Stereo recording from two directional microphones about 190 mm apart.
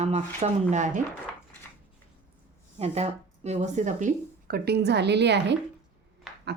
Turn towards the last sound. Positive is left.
turn(degrees=0)  # may be behind; listen again after turning